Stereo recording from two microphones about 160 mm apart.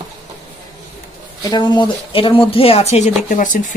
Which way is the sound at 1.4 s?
25° left (ahead or behind).